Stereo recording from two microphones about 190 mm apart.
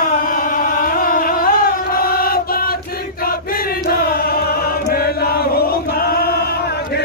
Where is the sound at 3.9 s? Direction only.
50° left (ahead or behind).